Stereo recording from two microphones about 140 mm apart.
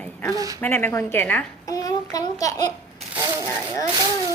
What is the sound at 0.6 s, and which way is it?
Speech, 15° left (ahead or behind).